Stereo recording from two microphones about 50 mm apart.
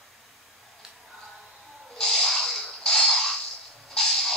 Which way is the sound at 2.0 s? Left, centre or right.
Centre.